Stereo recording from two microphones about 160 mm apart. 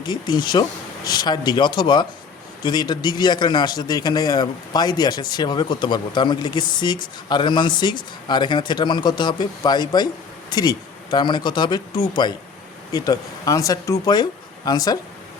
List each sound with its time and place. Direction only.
0.0 s a man's voice: 25° left (ahead or behind)